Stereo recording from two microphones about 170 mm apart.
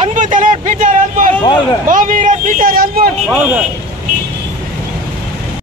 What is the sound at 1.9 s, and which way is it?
A man's voice, 50° right (ahead or behind).